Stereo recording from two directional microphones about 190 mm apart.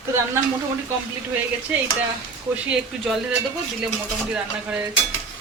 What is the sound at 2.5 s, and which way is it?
Speech, 5° right (ahead or behind).